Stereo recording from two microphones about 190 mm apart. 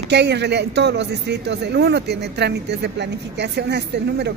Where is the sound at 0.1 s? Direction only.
60° right (ahead or behind).